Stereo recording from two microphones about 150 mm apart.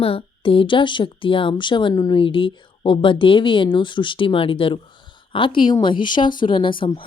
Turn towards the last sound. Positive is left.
turn(degrees=35)  # may be behind; listen again after turning